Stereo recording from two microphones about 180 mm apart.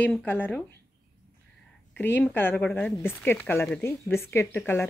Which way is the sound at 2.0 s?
10° left (ahead or behind).